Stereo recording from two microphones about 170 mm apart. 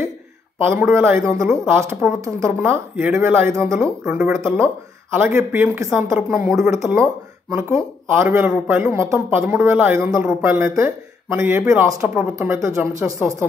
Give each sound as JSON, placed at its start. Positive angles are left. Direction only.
{"t": 0.7, "sound": "speech", "side_deg": -15}